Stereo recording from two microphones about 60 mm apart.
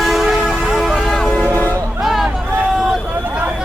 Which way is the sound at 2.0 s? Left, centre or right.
Centre.